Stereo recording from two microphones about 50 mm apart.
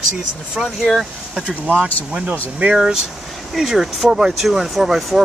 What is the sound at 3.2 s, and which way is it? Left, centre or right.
Speech, centre.